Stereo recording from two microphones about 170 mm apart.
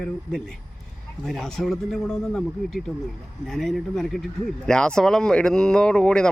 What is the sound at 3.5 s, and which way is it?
Speech, centre (ahead or behind).